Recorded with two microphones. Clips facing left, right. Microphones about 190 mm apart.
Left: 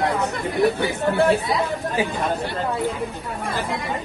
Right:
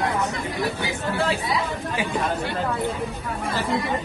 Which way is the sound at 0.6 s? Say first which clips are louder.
Left 10 dB; 60° left (ahead or behind).